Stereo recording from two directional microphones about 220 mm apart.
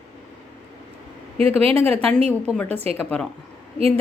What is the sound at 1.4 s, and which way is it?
Speech, 25° right (ahead or behind).